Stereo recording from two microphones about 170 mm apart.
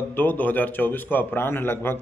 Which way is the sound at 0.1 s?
10° left (ahead or behind).